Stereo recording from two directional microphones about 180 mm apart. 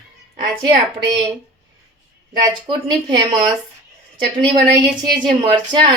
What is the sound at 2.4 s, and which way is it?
Speech, 25° right (ahead or behind).